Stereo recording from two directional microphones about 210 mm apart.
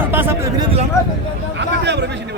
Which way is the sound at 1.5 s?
55° right (ahead or behind).